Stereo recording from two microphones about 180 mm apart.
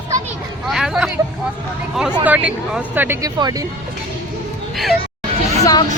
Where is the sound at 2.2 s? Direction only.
10° right (ahead or behind).